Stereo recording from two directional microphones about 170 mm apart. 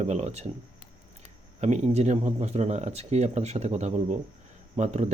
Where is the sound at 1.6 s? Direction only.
40° right (ahead or behind).